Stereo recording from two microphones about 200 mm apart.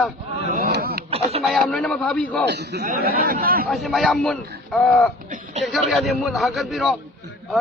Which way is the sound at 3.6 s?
Centre (ahead or behind).